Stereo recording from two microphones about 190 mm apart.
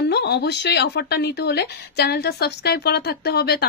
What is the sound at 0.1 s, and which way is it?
A woman's voice, 60° left (ahead or behind).